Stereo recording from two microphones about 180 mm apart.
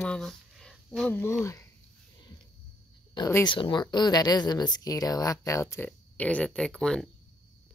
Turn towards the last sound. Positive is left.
turn(degrees=5)  # may be behind; listen again after turning